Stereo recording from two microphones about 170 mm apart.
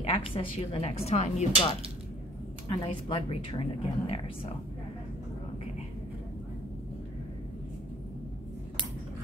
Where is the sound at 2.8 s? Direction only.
30° left (ahead or behind).